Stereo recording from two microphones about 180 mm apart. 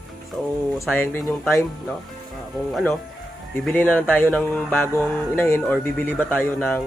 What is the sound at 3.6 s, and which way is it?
Speech, 5° left (ahead or behind).